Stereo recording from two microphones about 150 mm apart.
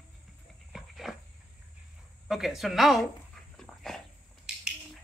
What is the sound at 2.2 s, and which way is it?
Dog, centre (ahead or behind).